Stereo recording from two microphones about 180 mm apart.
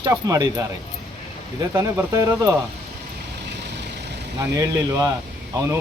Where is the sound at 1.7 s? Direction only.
15° right (ahead or behind).